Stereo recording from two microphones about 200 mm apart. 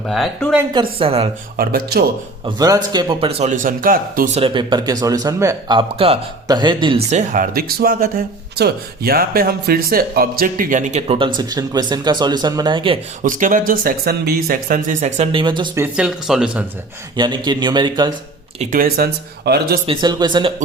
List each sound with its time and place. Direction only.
0.1 s speech: centre (ahead or behind)
0.7 s speech: 25° right (ahead or behind)
1.5 s speech: 50° right (ahead or behind)
2.4 s speech: 15° right (ahead or behind); by 4.3 s 45° right (ahead or behind)
4.4 s speech: 25° right (ahead or behind)
11.3 s speech: 20° right (ahead or behind)
13.2 s speech: 40° right (ahead or behind); by 15.8 s 25° right (ahead or behind)
15.8 s speech: 5° right (ahead or behind)
17.2 s speech: 20° right (ahead or behind)
18.6 s speech: 45° right (ahead or behind)
19.9 s speech: 20° right (ahead or behind)